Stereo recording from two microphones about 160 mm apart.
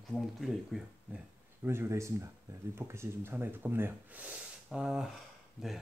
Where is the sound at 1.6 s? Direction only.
15° right (ahead or behind).